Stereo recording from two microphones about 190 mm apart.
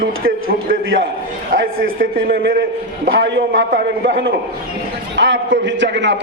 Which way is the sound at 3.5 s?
50° right (ahead or behind).